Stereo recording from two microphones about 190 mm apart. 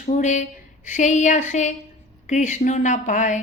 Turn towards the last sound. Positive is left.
turn(degrees=40)  # may be behind; listen again after turning